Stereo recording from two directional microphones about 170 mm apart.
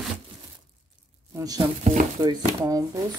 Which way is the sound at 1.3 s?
20° right (ahead or behind).